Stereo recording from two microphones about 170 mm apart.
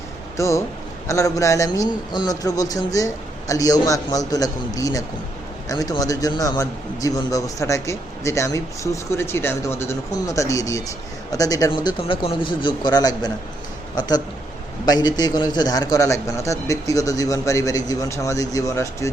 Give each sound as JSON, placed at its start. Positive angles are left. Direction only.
{"t": 0.3, "sound": "a man's voice", "side_deg": 15}
{"t": 14.8, "sound": "a man's voice", "side_deg": 25}